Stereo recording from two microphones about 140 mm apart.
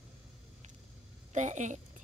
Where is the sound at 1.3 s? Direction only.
60° right (ahead or behind).